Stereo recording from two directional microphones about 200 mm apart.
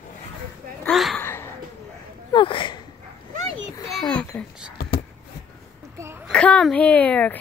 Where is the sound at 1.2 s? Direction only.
10° left (ahead or behind).